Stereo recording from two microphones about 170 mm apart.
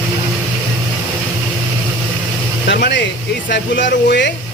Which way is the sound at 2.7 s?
90° left.